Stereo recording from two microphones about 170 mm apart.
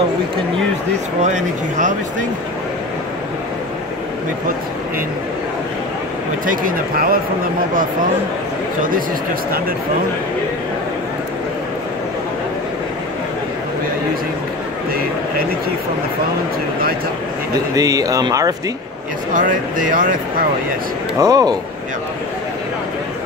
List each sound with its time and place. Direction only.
1.2 s speech: 45° right (ahead or behind)
6.4 s speech: 55° right (ahead or behind)
17.7 s speech: 20° right (ahead or behind)
19.3 s speech: 50° right (ahead or behind)
21.2 s speech: 20° right (ahead or behind)